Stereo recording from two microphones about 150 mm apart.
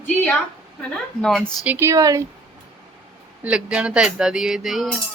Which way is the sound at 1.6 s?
15° right (ahead or behind).